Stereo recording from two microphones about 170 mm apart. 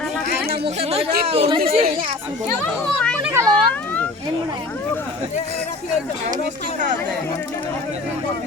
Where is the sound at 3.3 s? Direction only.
15° right (ahead or behind).